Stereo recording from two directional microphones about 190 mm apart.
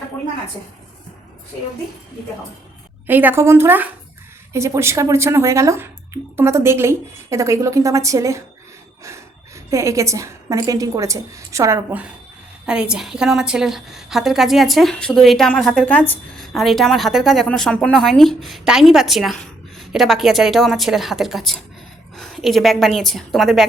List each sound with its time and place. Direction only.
3.1 s a woman's voice: 10° right (ahead or behind)
9.6 s a woman's voice: 15° right (ahead or behind); by 23.6 s centre (ahead or behind)